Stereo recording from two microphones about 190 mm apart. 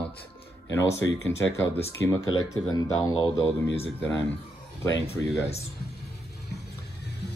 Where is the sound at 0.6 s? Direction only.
15° left (ahead or behind).